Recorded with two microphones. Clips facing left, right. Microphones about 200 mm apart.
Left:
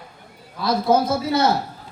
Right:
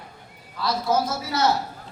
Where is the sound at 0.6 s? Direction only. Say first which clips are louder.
Left 5 dB; 55° left (ahead or behind).